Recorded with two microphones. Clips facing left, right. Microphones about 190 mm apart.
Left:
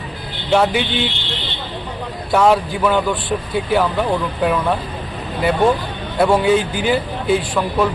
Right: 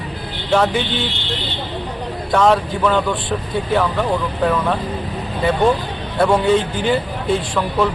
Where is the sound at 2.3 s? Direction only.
10° left (ahead or behind).